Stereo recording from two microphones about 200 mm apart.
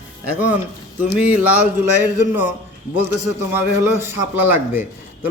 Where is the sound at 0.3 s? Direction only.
5° right (ahead or behind).